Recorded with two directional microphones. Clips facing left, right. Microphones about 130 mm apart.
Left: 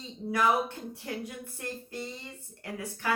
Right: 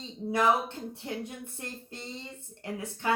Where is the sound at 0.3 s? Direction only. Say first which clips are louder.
Right 1 dB; 25° right (ahead or behind).